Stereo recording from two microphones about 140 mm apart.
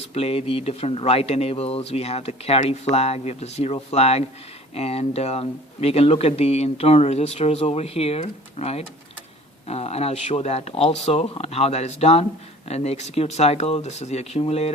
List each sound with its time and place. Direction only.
0.1 s speech: 45° left (ahead or behind)